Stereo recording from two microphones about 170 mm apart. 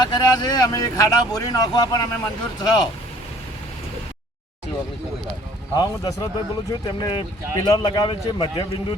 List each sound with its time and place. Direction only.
0.0 s speech: 25° left (ahead or behind)
5.7 s speech: 20° left (ahead or behind)